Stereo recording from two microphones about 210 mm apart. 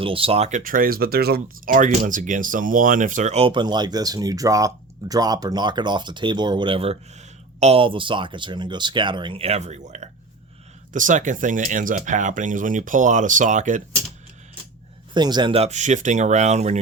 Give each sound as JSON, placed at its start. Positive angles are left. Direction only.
{"t": 0.0, "sound": "speech", "side_deg": -25}
{"t": 15.1, "sound": "speech", "side_deg": -20}